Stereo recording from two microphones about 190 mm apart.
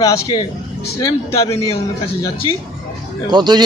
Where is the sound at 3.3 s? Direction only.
20° right (ahead or behind).